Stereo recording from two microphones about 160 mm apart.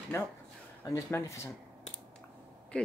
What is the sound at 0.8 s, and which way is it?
Speech, 20° left (ahead or behind).